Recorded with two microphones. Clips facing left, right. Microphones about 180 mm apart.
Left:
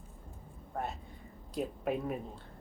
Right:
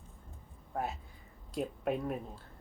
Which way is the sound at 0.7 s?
Centre (ahead or behind).